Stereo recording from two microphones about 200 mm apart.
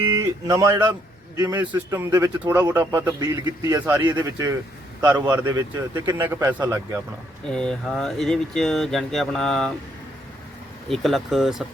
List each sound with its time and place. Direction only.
0.0 s a man's voice: 20° right (ahead or behind)
7.4 s speech: 5° left (ahead or behind)
10.8 s speech: centre (ahead or behind)